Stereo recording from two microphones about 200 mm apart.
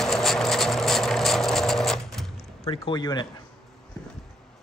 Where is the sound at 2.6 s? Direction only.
20° left (ahead or behind).